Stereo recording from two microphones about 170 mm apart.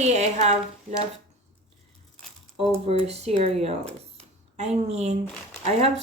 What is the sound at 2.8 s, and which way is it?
Speech, 40° right (ahead or behind).